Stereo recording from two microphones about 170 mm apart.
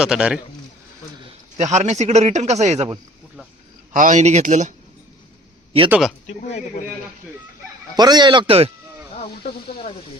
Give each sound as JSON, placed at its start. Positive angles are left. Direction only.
{"t": 0.0, "sound": "a man's voice", "side_deg": -5}
{"t": 1.5, "sound": "speech", "side_deg": -40}
{"t": 3.9, "sound": "speech", "side_deg": -50}
{"t": 5.9, "sound": "a man's voice", "side_deg": 0}
{"t": 6.2, "sound": "speech", "side_deg": 45}
{"t": 7.9, "sound": "speech", "side_deg": -25}